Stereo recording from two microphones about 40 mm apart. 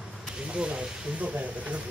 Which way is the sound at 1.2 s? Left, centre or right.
Right.